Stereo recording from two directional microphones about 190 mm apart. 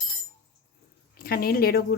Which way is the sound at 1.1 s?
50° left (ahead or behind).